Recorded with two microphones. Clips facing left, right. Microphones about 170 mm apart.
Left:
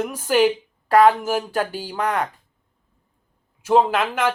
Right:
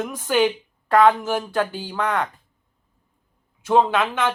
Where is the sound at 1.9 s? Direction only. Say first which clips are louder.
Left 1 dB; 40° left (ahead or behind).